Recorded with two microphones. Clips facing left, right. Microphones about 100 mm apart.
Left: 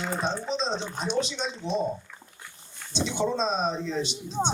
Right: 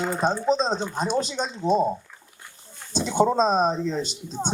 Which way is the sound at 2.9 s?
45° right (ahead or behind).